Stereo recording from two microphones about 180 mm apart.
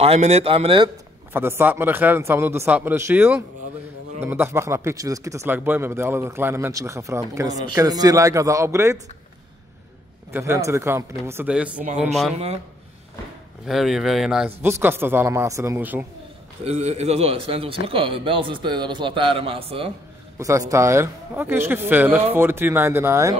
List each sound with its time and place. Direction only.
0.0 s a man's voice: 35° right (ahead or behind)
1.3 s speech: 10° right (ahead or behind)
10.3 s speech: 15° right (ahead or behind)
13.7 s speech: centre (ahead or behind)
16.6 s a man's voice: 35° right (ahead or behind)
20.3 s speech: 15° right (ahead or behind)